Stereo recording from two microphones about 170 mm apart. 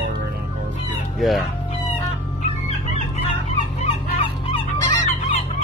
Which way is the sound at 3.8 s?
35° left (ahead or behind).